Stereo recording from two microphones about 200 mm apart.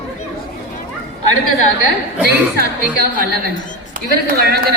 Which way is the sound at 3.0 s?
50° right (ahead or behind).